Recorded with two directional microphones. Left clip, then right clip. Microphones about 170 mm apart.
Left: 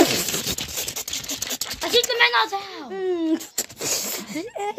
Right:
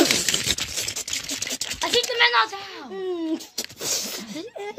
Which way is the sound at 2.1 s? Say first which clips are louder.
Even; 75° left (ahead or behind).